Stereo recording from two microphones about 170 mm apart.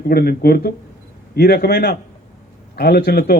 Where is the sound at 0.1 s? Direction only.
65° left (ahead or behind).